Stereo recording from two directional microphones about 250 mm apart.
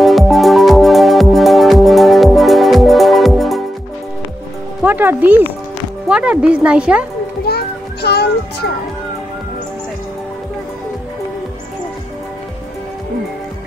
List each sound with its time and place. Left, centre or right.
0.0 s music: centre
4.8 s music: centre
6.0 s speech: centre
7.4 s children playing: left